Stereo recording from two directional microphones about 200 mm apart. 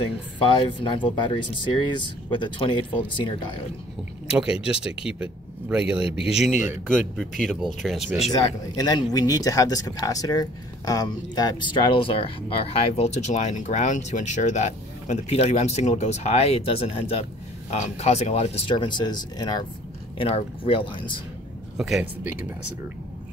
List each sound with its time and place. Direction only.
0.6 s speech: 25° left (ahead or behind)
4.4 s speech: 5° right (ahead or behind)
8.3 s speech: 20° left (ahead or behind)
21.7 s speech: centre (ahead or behind)